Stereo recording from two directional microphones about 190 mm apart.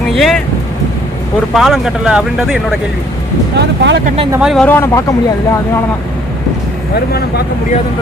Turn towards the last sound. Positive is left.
turn(degrees=55)  # may be behind; listen again after turning